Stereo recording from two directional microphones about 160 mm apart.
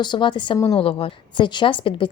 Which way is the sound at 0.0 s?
30° left (ahead or behind).